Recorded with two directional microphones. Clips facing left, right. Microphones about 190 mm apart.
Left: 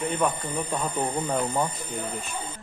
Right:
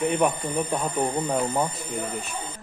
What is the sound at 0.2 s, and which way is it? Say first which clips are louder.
Speech: right 3 dB; 15° right (ahead or behind).